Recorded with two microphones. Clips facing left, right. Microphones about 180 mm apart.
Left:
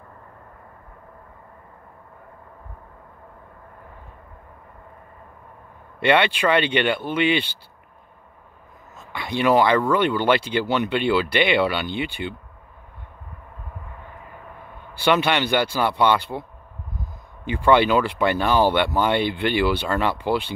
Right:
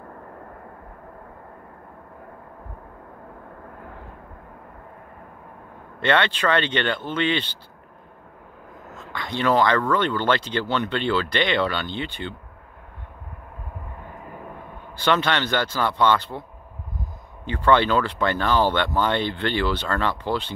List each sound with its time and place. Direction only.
5.9 s speech: 10° left (ahead or behind)
8.8 s a sound: 80° right
9.1 s speech: 10° left (ahead or behind)
15.0 s speech: 10° left (ahead or behind)
17.5 s speech: 10° left (ahead or behind)